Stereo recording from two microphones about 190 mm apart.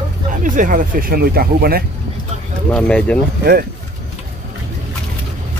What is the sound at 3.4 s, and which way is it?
Speech, 50° right (ahead or behind).